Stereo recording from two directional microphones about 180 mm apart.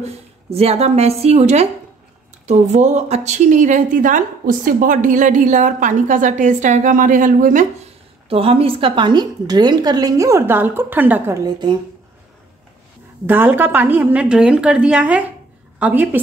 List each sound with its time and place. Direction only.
0.0 s a woman's voice: 35° right (ahead or behind)
8.3 s a woman's voice: 30° right (ahead or behind)
13.3 s a woman's voice: 10° right (ahead or behind)